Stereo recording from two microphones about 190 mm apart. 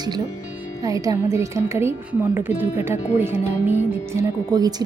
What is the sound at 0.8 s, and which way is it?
Speech, 20° right (ahead or behind).